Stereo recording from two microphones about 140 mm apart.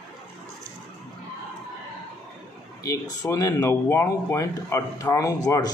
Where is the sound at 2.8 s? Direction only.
25° left (ahead or behind).